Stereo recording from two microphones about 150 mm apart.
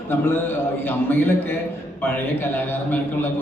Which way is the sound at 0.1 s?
15° left (ahead or behind).